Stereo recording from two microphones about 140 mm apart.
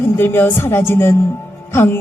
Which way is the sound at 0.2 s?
15° left (ahead or behind).